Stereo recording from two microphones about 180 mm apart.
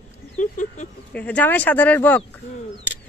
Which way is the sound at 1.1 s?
10° left (ahead or behind).